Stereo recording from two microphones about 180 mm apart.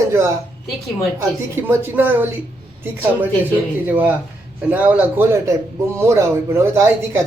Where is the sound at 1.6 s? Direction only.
10° right (ahead or behind).